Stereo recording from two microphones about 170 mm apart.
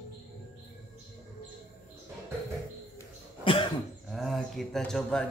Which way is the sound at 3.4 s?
30° left (ahead or behind).